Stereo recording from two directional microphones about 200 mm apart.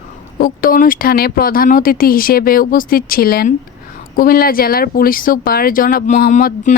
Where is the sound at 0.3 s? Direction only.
45° left (ahead or behind).